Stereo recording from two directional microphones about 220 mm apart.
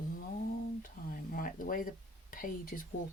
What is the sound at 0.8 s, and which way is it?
Speech, 40° left (ahead or behind).